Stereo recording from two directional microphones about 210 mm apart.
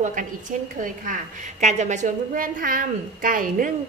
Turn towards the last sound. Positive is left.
turn(degrees=-40)  # may be behind; listen again after turning